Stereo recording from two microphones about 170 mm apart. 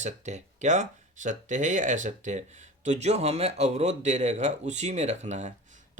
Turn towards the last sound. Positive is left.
turn(degrees=-45)  # may be behind; listen again after turning